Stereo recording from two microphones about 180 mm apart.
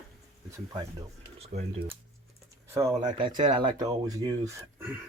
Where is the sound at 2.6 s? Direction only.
15° right (ahead or behind).